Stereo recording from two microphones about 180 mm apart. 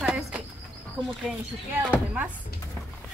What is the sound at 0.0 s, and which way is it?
Insect, 5° right (ahead or behind).